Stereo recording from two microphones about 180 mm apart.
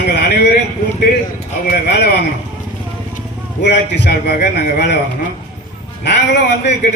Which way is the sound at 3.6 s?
70° left (ahead or behind).